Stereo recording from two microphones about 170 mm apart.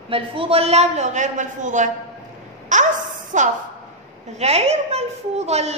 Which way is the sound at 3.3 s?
45° right (ahead or behind).